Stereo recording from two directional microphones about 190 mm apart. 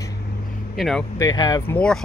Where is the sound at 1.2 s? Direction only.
20° left (ahead or behind).